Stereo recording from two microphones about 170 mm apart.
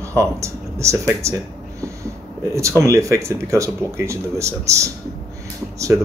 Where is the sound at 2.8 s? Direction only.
15° right (ahead or behind).